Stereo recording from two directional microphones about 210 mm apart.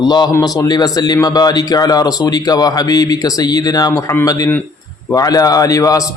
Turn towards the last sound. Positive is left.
turn(degrees=15)  # may be behind; listen again after turning